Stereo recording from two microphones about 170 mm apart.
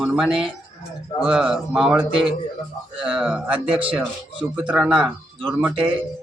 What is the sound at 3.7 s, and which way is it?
Speech, 30° right (ahead or behind).